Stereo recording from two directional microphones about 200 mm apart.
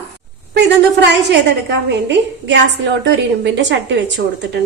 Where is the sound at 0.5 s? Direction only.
60° right (ahead or behind).